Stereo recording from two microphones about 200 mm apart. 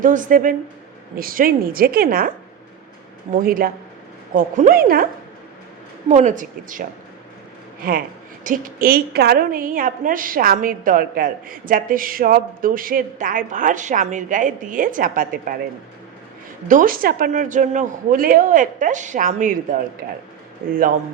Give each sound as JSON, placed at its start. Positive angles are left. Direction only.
{"t": 0.0, "sound": "a man's voice", "side_deg": -40}
{"t": 3.3, "sound": "a woman's voice", "side_deg": -45}
{"t": 6.1, "sound": "a man's voice", "side_deg": -35}
{"t": 8.4, "sound": "a woman's voice", "side_deg": -45}
{"t": 16.6, "sound": "a man's voice", "side_deg": -40}